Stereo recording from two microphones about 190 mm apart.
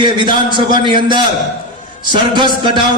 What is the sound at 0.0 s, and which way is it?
A man's voice, 25° right (ahead or behind).